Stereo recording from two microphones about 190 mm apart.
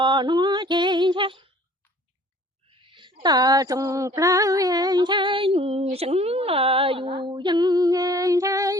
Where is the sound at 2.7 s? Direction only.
25° right (ahead or behind).